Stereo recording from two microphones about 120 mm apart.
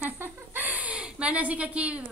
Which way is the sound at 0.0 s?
15° right (ahead or behind).